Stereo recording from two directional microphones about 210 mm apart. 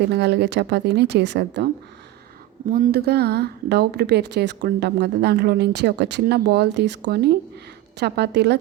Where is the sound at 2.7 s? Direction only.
45° right (ahead or behind).